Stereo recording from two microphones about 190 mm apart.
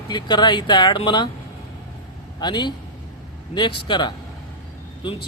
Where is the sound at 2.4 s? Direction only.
25° left (ahead or behind).